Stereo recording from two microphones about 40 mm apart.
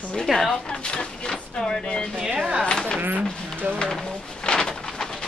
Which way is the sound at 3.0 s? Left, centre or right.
Right.